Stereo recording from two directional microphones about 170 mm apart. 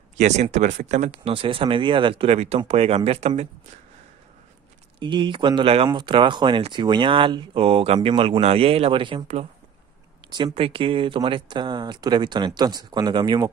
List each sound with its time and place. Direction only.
0.2 s speech: 45° right (ahead or behind)
5.0 s speech: 30° right (ahead or behind)